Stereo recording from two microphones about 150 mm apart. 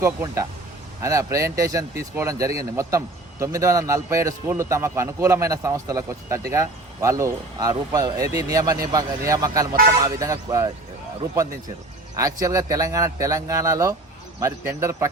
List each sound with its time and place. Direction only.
0.0 s speech: 20° right (ahead or behind)
12.1 s speech: 20° right (ahead or behind)